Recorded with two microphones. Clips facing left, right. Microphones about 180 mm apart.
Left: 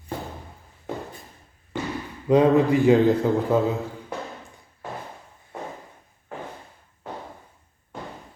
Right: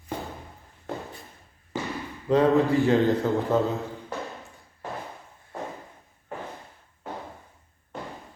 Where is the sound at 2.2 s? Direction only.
15° left (ahead or behind).